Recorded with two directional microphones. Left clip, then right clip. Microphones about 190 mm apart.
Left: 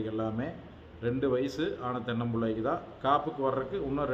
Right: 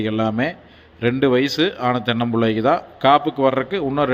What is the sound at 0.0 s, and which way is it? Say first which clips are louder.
A man's voice: right 13 dB; 25° right (ahead or behind).